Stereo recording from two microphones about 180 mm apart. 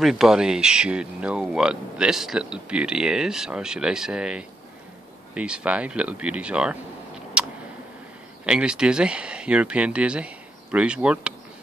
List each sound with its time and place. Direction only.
0.0 s speech: centre (ahead or behind)
7.4 s a sound: 5° right (ahead or behind)
8.5 s speech: 5° right (ahead or behind)